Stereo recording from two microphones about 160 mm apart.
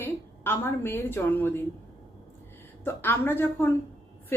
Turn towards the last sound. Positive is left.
turn(degrees=15)  # may be behind; listen again after turning